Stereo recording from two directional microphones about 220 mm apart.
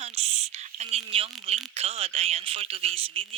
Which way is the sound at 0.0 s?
30° right (ahead or behind).